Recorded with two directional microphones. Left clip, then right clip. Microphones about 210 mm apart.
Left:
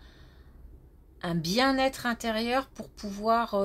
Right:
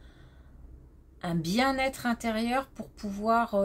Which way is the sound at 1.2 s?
25° left (ahead or behind).